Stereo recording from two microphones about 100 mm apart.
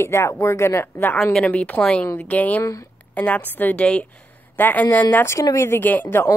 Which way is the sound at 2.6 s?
35° left (ahead or behind).